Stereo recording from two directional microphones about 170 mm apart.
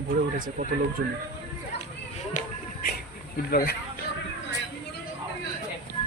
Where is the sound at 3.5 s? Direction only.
60° left (ahead or behind).